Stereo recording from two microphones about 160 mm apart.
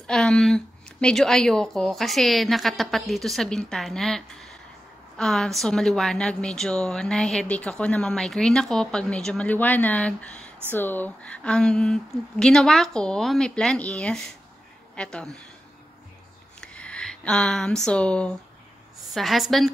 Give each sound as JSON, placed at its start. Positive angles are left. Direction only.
{"t": 0.0, "sound": "a woman's voice", "side_deg": 5}
{"t": 16.6, "sound": "a woman's voice", "side_deg": 5}